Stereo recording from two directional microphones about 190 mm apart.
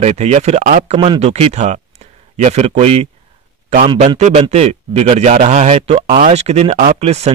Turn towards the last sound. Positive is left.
turn(degrees=-35)  # may be behind; listen again after turning